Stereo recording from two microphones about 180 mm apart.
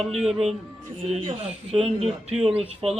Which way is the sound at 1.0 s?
35° right (ahead or behind).